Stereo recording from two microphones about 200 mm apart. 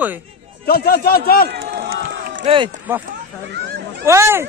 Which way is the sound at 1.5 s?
55° right (ahead or behind).